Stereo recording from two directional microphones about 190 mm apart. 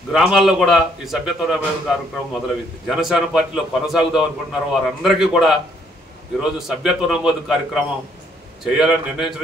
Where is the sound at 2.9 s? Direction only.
Centre (ahead or behind).